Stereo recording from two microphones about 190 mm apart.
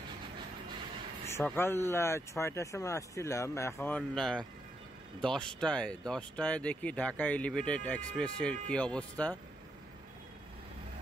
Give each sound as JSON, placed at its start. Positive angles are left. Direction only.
{"t": 1.2, "sound": "speech", "side_deg": 10}